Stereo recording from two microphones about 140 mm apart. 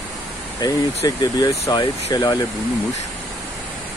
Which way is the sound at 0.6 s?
30° left (ahead or behind).